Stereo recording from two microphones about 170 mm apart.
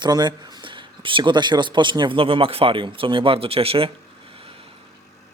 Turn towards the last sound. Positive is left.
turn(degrees=-35)  # may be behind; listen again after turning